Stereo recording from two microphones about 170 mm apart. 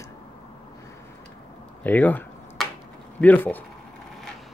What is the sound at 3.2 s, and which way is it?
Speech, 10° left (ahead or behind).